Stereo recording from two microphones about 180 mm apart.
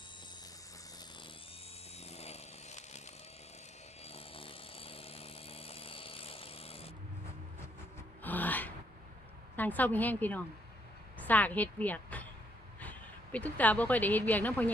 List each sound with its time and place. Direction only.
2.0 s chainsaw: 35° left (ahead or behind)
4.0 s chainsaw: 30° left (ahead or behind)
8.2 s gasp: 10° left (ahead or behind)
9.6 s a woman's voice: 10° left (ahead or behind)